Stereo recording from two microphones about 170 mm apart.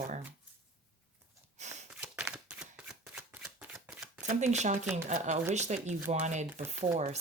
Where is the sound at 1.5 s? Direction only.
40° right (ahead or behind).